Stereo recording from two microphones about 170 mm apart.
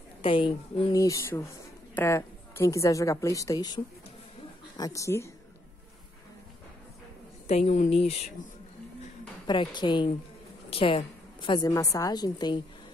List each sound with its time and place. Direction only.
0.2 s a woman's voice: 30° left (ahead or behind)
0.9 s a woman's voice: 20° left (ahead or behind)
7.4 s a woman's voice: 40° left (ahead or behind)
9.5 s a woman's voice: 25° left (ahead or behind)